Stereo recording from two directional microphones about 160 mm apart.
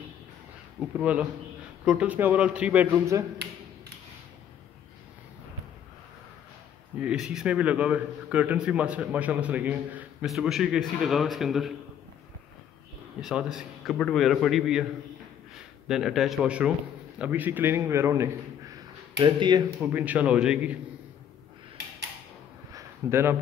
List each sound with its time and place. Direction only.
0.7 s a man's voice: 10° right (ahead or behind)
7.0 s a man's voice: 5° right (ahead or behind)
13.2 s a man's voice: 5° right (ahead or behind)
19.1 s speech: 30° right (ahead or behind)
19.8 s a man's voice: 10° right (ahead or behind)
22.7 s a sound: 20° right (ahead or behind)